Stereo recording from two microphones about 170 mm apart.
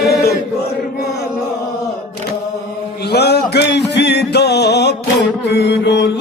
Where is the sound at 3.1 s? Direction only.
75° left (ahead or behind).